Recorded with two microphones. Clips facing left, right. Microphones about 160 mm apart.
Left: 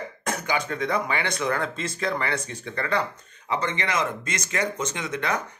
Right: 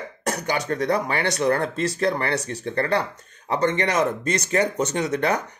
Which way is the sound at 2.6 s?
35° right (ahead or behind).